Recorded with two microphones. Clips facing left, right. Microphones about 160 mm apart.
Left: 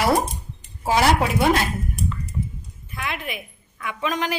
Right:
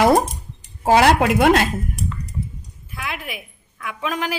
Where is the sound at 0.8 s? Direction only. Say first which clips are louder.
Right 5 dB; 70° right (ahead or behind).